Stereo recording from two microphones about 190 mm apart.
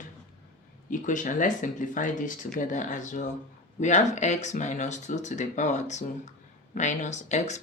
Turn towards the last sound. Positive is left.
turn(degrees=40)  # may be behind; listen again after turning